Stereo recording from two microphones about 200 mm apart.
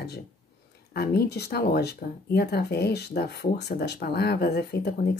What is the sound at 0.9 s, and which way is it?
Speech, 55° left (ahead or behind).